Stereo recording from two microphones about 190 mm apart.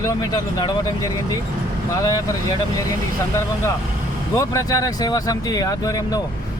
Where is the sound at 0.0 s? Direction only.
20° left (ahead or behind).